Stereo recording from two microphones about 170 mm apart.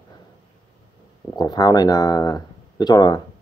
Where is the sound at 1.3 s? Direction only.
25° left (ahead or behind).